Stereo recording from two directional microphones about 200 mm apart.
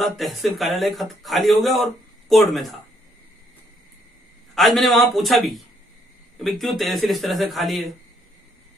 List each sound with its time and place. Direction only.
0.0 s speech: centre (ahead or behind)
4.6 s speech: centre (ahead or behind)